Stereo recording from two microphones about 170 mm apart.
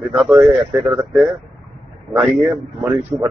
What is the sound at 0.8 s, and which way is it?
Speech, 15° right (ahead or behind).